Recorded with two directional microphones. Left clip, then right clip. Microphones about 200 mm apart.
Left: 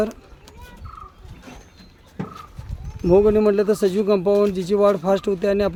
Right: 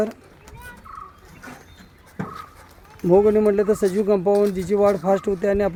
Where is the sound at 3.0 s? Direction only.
10° left (ahead or behind).